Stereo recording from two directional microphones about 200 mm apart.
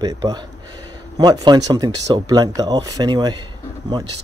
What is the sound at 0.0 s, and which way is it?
Speech, 20° right (ahead or behind).